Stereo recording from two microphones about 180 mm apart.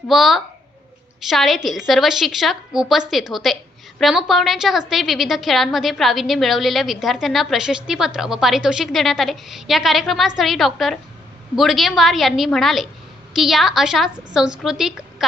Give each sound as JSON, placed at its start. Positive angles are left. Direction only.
{"t": 0.1, "sound": "a woman's voice", "side_deg": 0}